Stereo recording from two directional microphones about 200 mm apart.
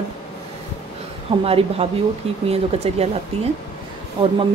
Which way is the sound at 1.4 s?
30° right (ahead or behind).